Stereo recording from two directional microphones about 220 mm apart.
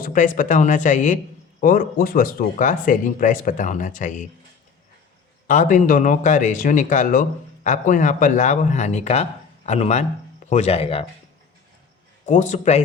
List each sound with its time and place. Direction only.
0.0 s speech: 40° left (ahead or behind)
5.5 s speech: 35° left (ahead or behind)
12.2 s speech: 35° left (ahead or behind)